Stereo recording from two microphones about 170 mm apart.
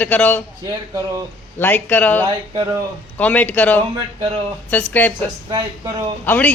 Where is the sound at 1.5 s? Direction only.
10° left (ahead or behind).